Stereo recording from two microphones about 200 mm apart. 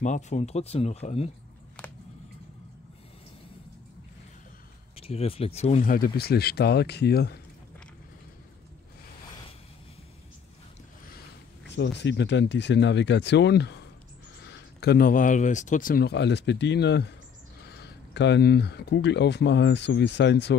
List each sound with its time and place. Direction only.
0.0 s speech: 35° left (ahead or behind)
1.8 s a sound: 5° left (ahead or behind)
4.9 s speech: 30° left (ahead or behind); by 7.3 s 55° left (ahead or behind)
11.7 s speech: 60° left (ahead or behind)